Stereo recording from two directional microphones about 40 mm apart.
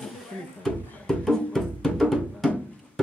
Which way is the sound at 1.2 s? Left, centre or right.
Centre.